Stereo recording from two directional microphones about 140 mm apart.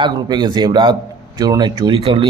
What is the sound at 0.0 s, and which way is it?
A man's voice, 30° right (ahead or behind).